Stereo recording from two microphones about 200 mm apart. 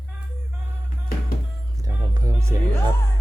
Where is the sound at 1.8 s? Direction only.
20° right (ahead or behind).